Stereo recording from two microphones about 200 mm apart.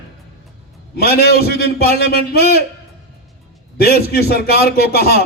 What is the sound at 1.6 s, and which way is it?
Speech, 50° left (ahead or behind).